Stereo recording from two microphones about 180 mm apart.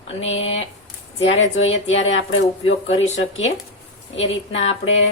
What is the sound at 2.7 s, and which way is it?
Speech, 35° left (ahead or behind).